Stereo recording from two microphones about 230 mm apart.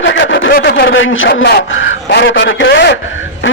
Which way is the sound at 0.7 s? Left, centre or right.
Left.